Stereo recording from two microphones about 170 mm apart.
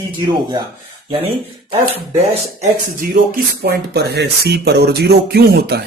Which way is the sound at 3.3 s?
65° right (ahead or behind).